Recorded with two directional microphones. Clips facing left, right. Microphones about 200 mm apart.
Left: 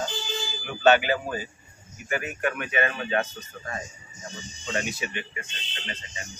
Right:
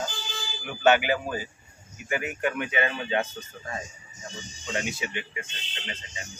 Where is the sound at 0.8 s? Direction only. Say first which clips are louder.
Left 1 dB; 15° right (ahead or behind).